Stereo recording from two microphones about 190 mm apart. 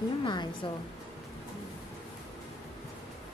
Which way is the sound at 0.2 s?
25° left (ahead or behind).